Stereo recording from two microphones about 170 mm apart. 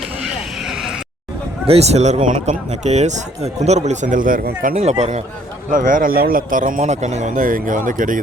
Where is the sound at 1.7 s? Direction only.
40° right (ahead or behind).